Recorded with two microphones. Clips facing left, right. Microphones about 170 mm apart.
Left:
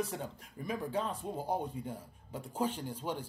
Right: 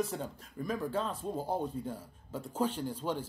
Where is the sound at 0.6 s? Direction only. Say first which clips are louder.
Right 1 dB; 15° left (ahead or behind).